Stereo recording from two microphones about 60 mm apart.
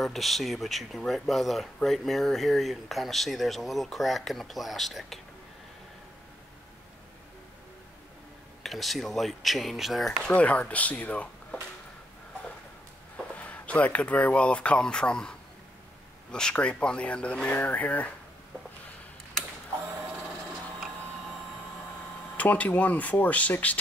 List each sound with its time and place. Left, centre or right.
0.0 s speech: centre
8.6 s speech: centre
10.2 s speech: left
13.4 s speech: left
22.4 s speech: left